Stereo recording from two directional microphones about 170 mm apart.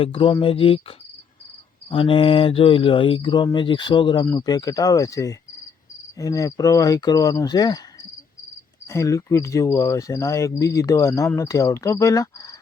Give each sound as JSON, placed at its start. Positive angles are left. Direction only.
{"t": 0.0, "sound": "speech", "side_deg": 30}
{"t": 8.9, "sound": "cricket", "side_deg": 15}
{"t": 10.6, "sound": "speech", "side_deg": 20}